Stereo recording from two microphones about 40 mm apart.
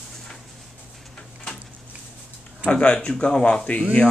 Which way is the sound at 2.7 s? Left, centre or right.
Left.